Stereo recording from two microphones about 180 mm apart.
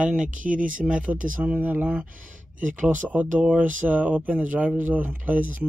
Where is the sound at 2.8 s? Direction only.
45° right (ahead or behind).